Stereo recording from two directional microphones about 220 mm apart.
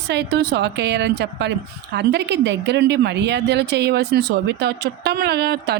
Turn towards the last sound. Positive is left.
turn(degrees=-50)  # may be behind; listen again after turning